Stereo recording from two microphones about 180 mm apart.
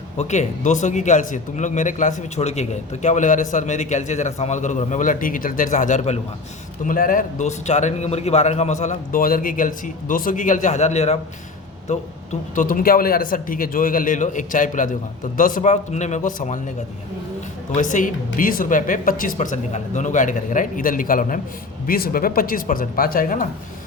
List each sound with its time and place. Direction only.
0.2 s a man's voice: 40° left (ahead or behind)
17.7 s speech: 45° left (ahead or behind)